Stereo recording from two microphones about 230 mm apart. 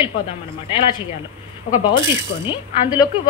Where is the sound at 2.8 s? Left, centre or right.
Centre.